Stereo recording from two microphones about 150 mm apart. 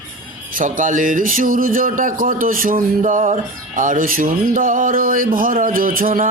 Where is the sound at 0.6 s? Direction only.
60° right (ahead or behind).